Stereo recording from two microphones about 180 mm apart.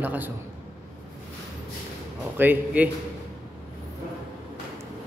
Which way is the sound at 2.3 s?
10° right (ahead or behind).